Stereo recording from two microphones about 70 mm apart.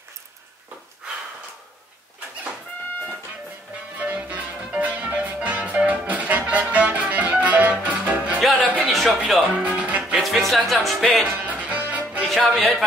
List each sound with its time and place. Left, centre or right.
4.0 s music: right
8.8 s a sound: centre
9.6 s music: centre
10.2 s music: centre
11.3 s music: right
12.3 s speech: centre